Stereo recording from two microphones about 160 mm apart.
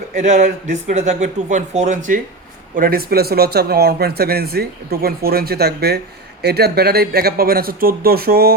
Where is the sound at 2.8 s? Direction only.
70° right (ahead or behind).